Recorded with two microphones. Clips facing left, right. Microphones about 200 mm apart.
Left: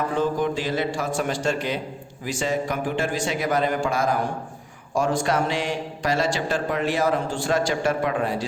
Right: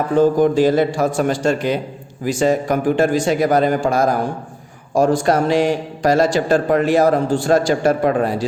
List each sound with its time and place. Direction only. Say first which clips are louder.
0.2 s a man's voice: right 13 dB; 40° right (ahead or behind)